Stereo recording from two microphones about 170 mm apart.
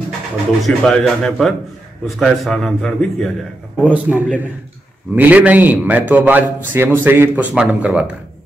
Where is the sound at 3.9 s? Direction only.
10° right (ahead or behind).